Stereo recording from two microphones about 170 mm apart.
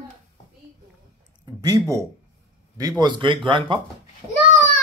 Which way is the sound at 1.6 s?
20° right (ahead or behind).